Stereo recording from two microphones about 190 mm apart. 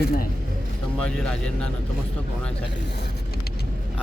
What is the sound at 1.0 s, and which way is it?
Speech, 5° left (ahead or behind).